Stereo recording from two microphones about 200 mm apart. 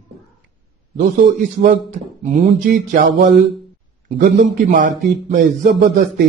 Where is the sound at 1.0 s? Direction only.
40° right (ahead or behind).